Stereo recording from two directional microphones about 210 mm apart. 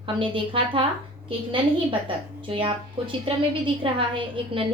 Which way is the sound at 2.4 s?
25° right (ahead or behind).